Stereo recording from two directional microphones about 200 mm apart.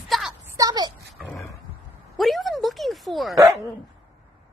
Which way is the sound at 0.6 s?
20° right (ahead or behind).